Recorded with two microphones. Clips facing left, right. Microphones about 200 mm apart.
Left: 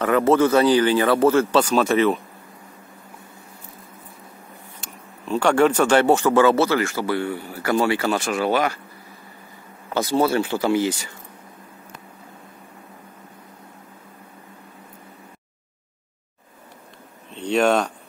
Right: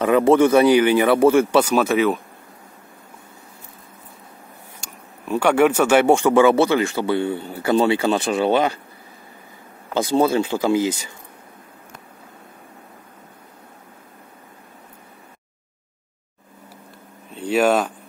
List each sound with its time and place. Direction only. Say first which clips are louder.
0.0 s speech: right 3 dB; 15° right (ahead or behind)
5.3 s speech: right 1 dB; 10° right (ahead or behind); by 8.7 s 25° right (ahead or behind)
9.9 s speech: right 2 dB; 15° right (ahead or behind)
17.3 s a sound: right 1 dB; 5° right (ahead or behind)